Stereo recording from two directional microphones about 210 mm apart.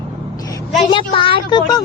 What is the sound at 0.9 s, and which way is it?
Speech, 25° left (ahead or behind).